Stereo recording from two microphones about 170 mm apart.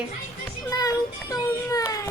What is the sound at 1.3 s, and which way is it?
Baby cry, 20° left (ahead or behind).